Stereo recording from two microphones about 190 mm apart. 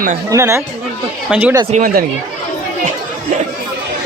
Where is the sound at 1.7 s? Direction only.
45° right (ahead or behind).